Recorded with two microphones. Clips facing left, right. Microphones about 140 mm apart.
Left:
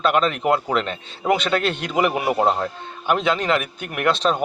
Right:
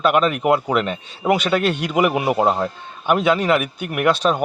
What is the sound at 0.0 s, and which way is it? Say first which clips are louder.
Speech: right 2 dB; 10° right (ahead or behind).